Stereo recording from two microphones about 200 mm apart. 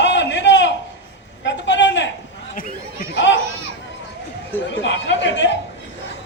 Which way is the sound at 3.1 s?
65° left (ahead or behind).